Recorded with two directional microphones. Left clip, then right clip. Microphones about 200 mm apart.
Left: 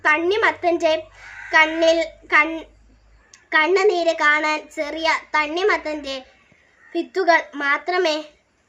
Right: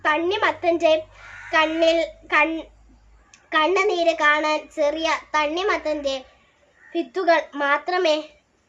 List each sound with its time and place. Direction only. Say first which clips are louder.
0.0 s a child's voice: left 3 dB; 10° right (ahead or behind)